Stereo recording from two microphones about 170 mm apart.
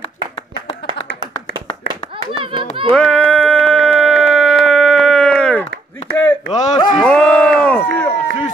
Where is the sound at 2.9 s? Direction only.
5° left (ahead or behind).